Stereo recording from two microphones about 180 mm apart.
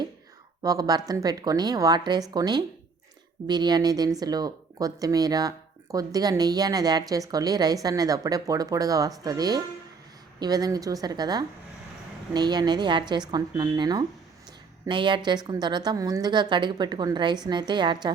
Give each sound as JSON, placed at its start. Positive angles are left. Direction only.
{"t": 0.6, "sound": "speech", "side_deg": -20}